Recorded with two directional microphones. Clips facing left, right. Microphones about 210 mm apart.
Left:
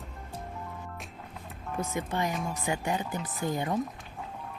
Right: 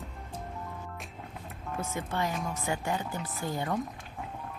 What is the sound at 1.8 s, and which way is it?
Speech, 15° left (ahead or behind).